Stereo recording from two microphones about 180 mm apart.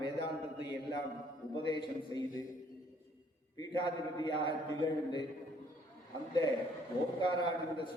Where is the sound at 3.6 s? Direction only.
25° left (ahead or behind).